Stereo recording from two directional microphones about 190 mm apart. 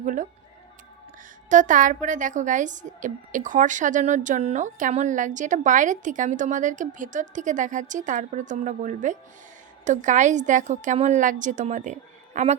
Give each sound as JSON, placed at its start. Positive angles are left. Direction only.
{"t": 0.0, "sound": "music", "side_deg": -40}
{"t": 1.5, "sound": "a woman's voice", "side_deg": -40}